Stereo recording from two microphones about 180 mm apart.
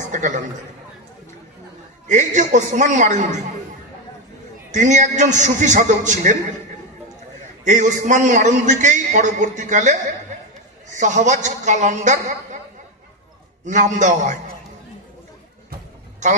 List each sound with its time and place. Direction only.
0.0 s a man's voice: 45° right (ahead or behind)
2.0 s a man's voice: 45° right (ahead or behind)
4.6 s a man's voice: 40° right (ahead or behind)
7.6 s a man's voice: 45° right (ahead or behind)
13.7 s a man's voice: 45° right (ahead or behind)
16.2 s a man's voice: 40° right (ahead or behind)